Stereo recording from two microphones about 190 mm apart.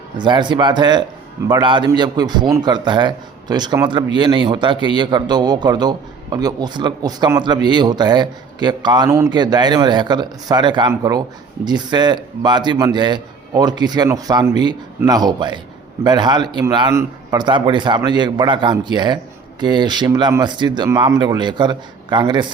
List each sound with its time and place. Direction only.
0.2 s a man's voice: 25° right (ahead or behind)